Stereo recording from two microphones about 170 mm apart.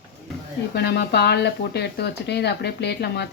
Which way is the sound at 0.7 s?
75° left (ahead or behind).